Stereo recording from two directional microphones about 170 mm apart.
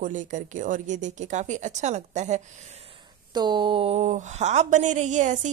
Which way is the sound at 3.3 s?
25° right (ahead or behind).